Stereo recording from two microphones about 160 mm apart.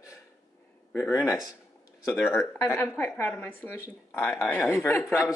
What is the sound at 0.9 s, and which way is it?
Speech, 15° left (ahead or behind).